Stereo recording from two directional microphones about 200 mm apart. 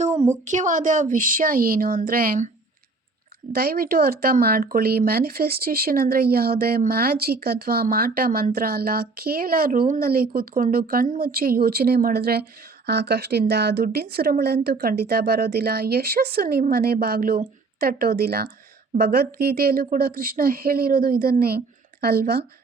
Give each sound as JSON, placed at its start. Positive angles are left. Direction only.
{"t": 0.1, "sound": "a sound", "side_deg": -15}
{"t": 0.4, "sound": "speech", "side_deg": -40}
{"t": 3.5, "sound": "speech", "side_deg": -50}